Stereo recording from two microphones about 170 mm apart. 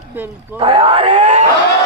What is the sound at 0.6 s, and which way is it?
Groan, 35° right (ahead or behind).